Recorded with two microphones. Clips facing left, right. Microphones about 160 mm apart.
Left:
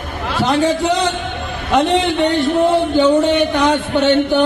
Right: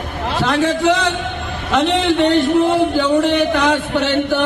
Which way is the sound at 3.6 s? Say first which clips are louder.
Left 2 dB; 20° left (ahead or behind).